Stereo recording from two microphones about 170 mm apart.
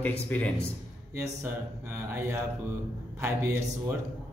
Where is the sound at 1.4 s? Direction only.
15° right (ahead or behind).